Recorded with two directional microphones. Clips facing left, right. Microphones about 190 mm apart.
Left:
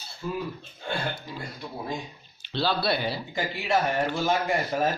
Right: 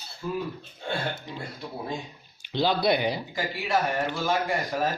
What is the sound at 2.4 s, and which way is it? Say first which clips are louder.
Speech: right 3 dB; 15° right (ahead or behind).